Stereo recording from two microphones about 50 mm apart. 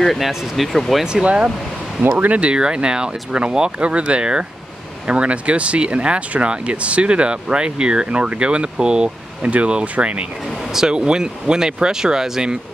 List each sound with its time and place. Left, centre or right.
0.0 s speech: centre
1.0 s speech: centre
9.4 s speech: right